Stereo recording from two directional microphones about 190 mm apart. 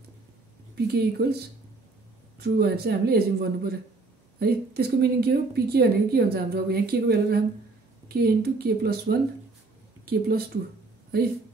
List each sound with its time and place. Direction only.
0.7 s a woman's voice: 55° right (ahead or behind)